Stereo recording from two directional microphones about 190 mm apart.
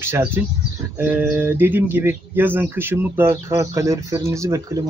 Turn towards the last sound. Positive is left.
turn(degrees=-15)  # may be behind; listen again after turning